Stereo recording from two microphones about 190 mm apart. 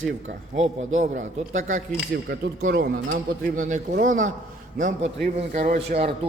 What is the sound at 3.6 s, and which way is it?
A man's voice, 45° right (ahead or behind).